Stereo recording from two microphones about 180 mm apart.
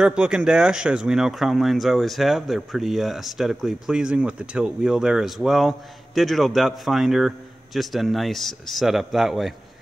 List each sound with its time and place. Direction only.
0.0 s speech: 5° right (ahead or behind)